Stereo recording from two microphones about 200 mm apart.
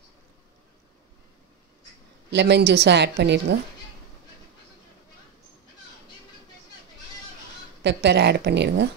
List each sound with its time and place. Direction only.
2.3 s a woman's voice: 60° right (ahead or behind)
7.8 s a woman's voice: 60° right (ahead or behind)